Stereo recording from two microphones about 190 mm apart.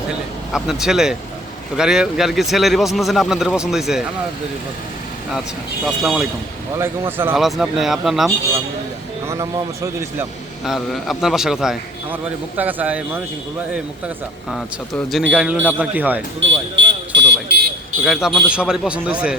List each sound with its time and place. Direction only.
0.5 s a man's voice: 5° right (ahead or behind)
5.8 s a man's voice: centre (ahead or behind)
6.7 s speech: 10° right (ahead or behind)
7.3 s a man's voice: centre (ahead or behind)
9.2 s speech: 15° right (ahead or behind)
10.7 s a man's voice: centre (ahead or behind)
14.5 s a man's voice: 5° left (ahead or behind)
16.4 s a sound: 75° right (ahead or behind)
18.0 s a man's voice: centre (ahead or behind)